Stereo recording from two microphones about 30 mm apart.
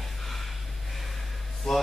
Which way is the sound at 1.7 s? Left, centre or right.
Centre.